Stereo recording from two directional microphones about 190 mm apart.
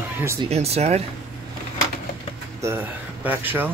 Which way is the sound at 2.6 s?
10° right (ahead or behind).